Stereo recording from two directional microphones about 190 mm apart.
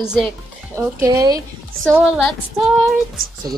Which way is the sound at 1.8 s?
5° left (ahead or behind).